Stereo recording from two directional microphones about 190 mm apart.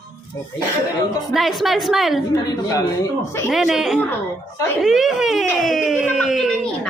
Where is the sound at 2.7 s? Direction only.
15° left (ahead or behind).